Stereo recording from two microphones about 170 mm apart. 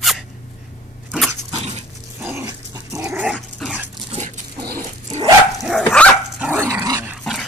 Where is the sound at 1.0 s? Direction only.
Centre (ahead or behind).